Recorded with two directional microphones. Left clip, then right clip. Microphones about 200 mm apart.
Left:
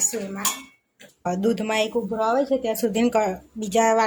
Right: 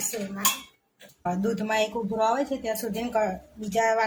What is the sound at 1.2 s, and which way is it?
Speech, 40° left (ahead or behind).